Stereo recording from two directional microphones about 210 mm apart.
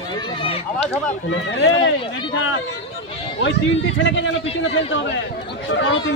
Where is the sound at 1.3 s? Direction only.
60° left (ahead or behind).